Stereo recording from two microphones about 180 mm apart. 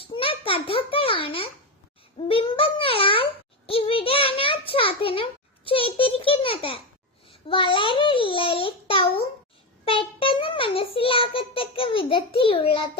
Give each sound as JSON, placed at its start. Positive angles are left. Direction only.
{"t": 0.0, "sound": "a child's voice", "side_deg": 30}
{"t": 2.1, "sound": "a sound", "side_deg": 30}
{"t": 9.8, "sound": "child singing", "side_deg": 30}